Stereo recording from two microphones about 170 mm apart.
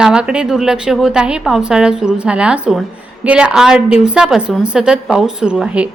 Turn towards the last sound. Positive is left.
turn(degrees=-5)  # may be behind; listen again after turning